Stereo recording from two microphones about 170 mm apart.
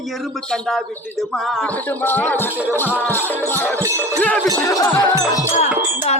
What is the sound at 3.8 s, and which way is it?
Jingle bell, 15° right (ahead or behind).